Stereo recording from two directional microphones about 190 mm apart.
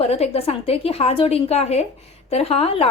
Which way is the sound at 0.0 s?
35° left (ahead or behind).